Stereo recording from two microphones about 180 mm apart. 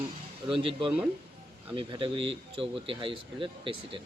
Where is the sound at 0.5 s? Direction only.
30° right (ahead or behind).